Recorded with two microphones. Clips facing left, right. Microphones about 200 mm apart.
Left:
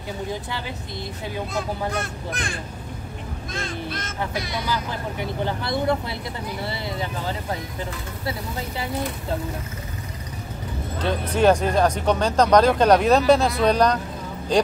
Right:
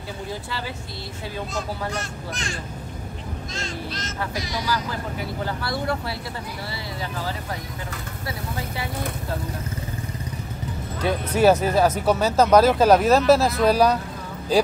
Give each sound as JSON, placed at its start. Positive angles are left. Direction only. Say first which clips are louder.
{"t": 0.3, "sound": "speech", "louder": "left 1 dB", "side_deg": 20}
{"t": 1.5, "sound": "speech", "louder": "left 3 dB", "side_deg": 55}
{"t": 5.4, "sound": "speech", "louder": "left 4 dB", "side_deg": 20}
{"t": 11.0, "sound": "speech", "louder": "right 1 dB", "side_deg": -10}